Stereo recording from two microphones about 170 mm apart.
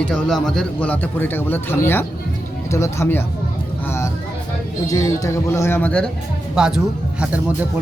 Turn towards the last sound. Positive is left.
turn(degrees=-10)  # may be behind; listen again after turning